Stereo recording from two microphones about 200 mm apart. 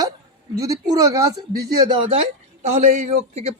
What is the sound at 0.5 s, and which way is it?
A man's voice, 20° right (ahead or behind).